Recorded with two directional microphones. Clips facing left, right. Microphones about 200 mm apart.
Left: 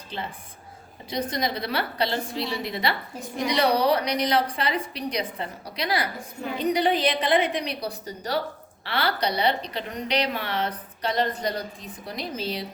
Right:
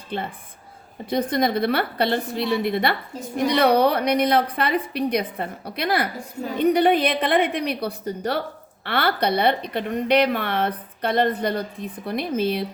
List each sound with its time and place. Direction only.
0.1 s speech: 55° right (ahead or behind)